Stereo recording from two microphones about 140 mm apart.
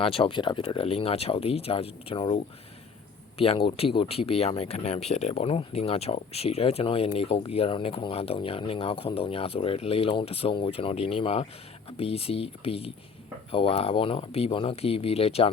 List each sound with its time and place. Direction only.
0.0 s speech: 40° left (ahead or behind)